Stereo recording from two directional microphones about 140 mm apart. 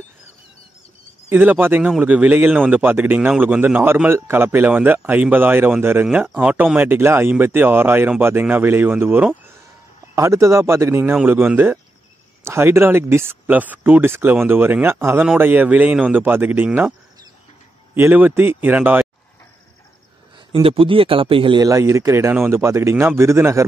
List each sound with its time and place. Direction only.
1.3 s a man's voice: 10° right (ahead or behind)
17.9 s a man's voice: 15° right (ahead or behind)
20.3 s a man's voice: 35° right (ahead or behind)
21.6 s speech: 20° right (ahead or behind)